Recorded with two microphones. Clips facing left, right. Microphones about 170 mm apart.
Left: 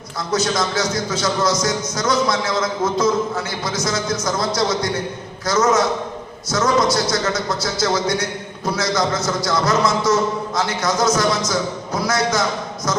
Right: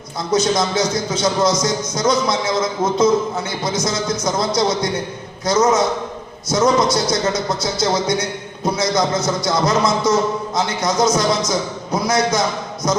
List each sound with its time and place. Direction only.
0.3 s a man's voice: 20° right (ahead or behind)